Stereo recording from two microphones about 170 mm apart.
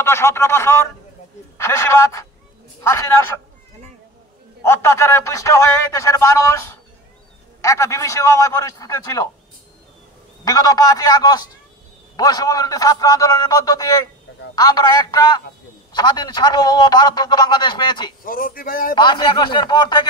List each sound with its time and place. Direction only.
0.0 s speech: 15° left (ahead or behind)
4.6 s speech: 15° left (ahead or behind)
10.4 s a man's voice: 20° left (ahead or behind)
18.2 s speech: 55° left (ahead or behind)
18.9 s a man's voice: 25° left (ahead or behind)